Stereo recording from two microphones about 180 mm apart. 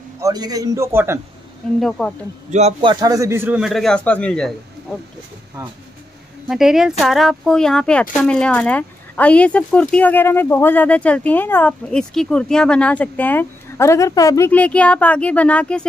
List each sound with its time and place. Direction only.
0.2 s a man's voice: 20° right (ahead or behind)
1.8 s a man's voice: centre (ahead or behind)
2.5 s a man's voice: 35° right (ahead or behind)
2.9 s a man's voice: 20° right (ahead or behind); by 4.6 s 5° left (ahead or behind)
6.5 s speech: centre (ahead or behind); by 14.5 s 20° left (ahead or behind)
14.5 s speech: 5° left (ahead or behind)